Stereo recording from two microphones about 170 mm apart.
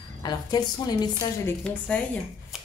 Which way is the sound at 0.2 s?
25° left (ahead or behind).